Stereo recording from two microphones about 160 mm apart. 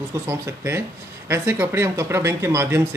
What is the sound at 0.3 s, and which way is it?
Speech, 15° right (ahead or behind).